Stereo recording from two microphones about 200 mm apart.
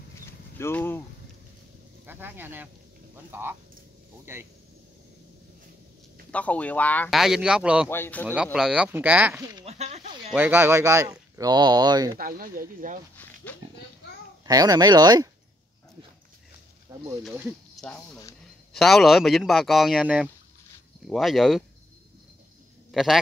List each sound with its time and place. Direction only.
0.6 s speech: 10° left (ahead or behind)
2.0 s speech: 10° right (ahead or behind)
6.3 s speech: 5° left (ahead or behind)
7.9 s speech: 10° left (ahead or behind)
8.5 s speech: 5° right (ahead or behind)
9.7 s a sound: 35° right (ahead or behind)
10.3 s speech: 10° right (ahead or behind)
12.2 s speech: 45° right (ahead or behind)
13.2 s a sound: 10° left (ahead or behind)
14.4 s speech: 20° right (ahead or behind)
17.2 s speech: 5° right (ahead or behind)
22.8 s speech: centre (ahead or behind)